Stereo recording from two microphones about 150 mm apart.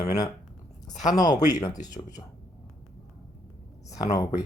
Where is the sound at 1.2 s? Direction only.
25° left (ahead or behind).